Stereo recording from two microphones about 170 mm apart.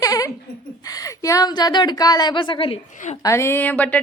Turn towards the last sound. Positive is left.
turn(degrees=10)  # may be behind; listen again after turning